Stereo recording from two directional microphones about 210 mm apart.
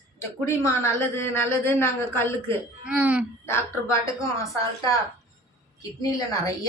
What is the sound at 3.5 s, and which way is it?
Speech, 10° left (ahead or behind).